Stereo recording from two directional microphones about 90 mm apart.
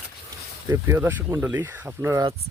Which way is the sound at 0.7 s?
30° right (ahead or behind).